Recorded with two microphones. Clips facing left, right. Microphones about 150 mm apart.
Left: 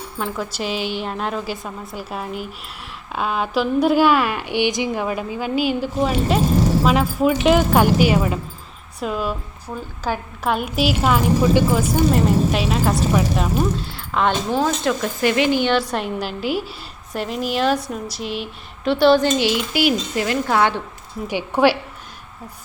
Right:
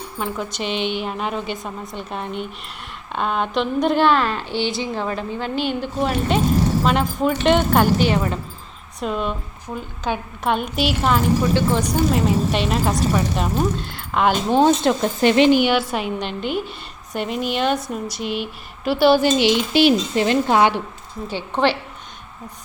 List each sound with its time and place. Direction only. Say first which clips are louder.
0.2 s a woman's voice: left 1 dB; 5° left (ahead or behind)
14.5 s a child's voice: right 4 dB; 25° right (ahead or behind)
15.6 s speech: even; 5° right (ahead or behind)
19.4 s a child's voice: right 3 dB; 25° right (ahead or behind)
21.2 s a woman's voice: left 3 dB; 10° left (ahead or behind)